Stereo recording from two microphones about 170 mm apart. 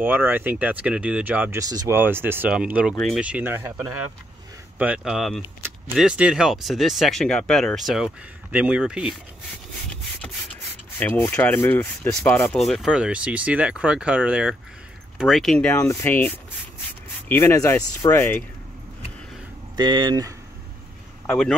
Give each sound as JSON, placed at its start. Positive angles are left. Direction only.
{"t": 0.0, "sound": "speech", "side_deg": -10}
{"t": 11.0, "sound": "speech", "side_deg": 10}
{"t": 15.7, "sound": "speech", "side_deg": 15}
{"t": 19.8, "sound": "speech", "side_deg": -25}
{"t": 21.3, "sound": "speech", "side_deg": 5}